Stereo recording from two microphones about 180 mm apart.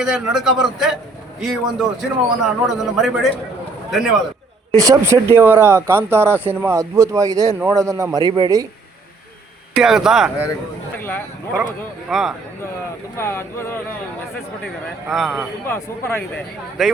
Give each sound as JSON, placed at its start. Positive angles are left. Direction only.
{"t": 0.0, "sound": "a man's voice", "side_deg": -5}
{"t": 4.7, "sound": "a man's voice", "side_deg": -20}
{"t": 9.7, "sound": "a man's voice", "side_deg": -5}
{"t": 11.0, "sound": "speech", "side_deg": 10}
{"t": 12.0, "sound": "a man's voice", "side_deg": 0}
{"t": 13.1, "sound": "speech", "side_deg": 15}
{"t": 15.1, "sound": "a man's voice", "side_deg": 0}
{"t": 15.6, "sound": "speech", "side_deg": 10}